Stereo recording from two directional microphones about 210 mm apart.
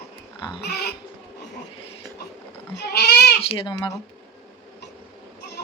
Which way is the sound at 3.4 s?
20° left (ahead or behind).